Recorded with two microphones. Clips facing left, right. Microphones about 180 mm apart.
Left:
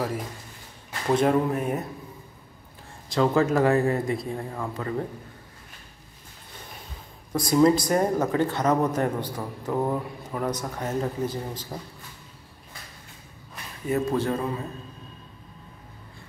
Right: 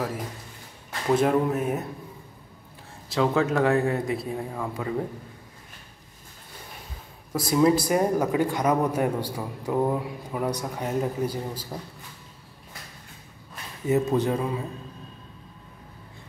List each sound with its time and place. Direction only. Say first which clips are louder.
1.0 s speech: even; centre (ahead or behind)
3.1 s speech: left 1 dB; centre (ahead or behind)
7.3 s speech: left 1 dB; 5° right (ahead or behind)
13.8 s speech: right 2 dB; 20° right (ahead or behind)